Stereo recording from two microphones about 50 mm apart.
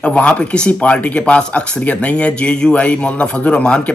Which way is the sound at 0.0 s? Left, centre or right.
Left.